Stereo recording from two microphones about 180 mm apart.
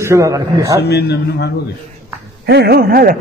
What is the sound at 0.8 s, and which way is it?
Speech, 65° left (ahead or behind).